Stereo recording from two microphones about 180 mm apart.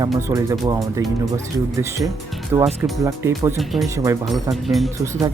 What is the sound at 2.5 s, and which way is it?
Speech, 15° right (ahead or behind).